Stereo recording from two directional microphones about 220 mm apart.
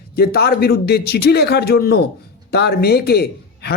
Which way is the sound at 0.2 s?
45° left (ahead or behind).